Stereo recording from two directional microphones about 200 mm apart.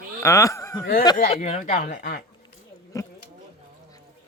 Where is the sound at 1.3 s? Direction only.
35° left (ahead or behind).